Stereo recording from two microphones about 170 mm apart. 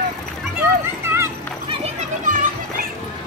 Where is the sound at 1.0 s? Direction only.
15° right (ahead or behind).